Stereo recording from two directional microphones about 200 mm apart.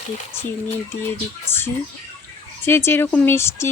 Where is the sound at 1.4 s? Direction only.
10° left (ahead or behind).